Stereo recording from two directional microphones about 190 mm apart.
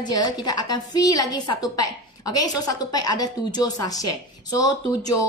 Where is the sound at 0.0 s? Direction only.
20° left (ahead or behind).